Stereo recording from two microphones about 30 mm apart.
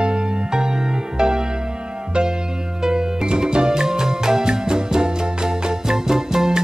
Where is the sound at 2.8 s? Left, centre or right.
Right.